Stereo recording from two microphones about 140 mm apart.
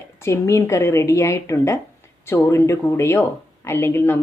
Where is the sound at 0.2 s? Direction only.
20° left (ahead or behind).